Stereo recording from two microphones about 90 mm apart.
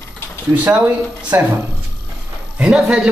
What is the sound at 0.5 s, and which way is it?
Speech, 15° right (ahead or behind).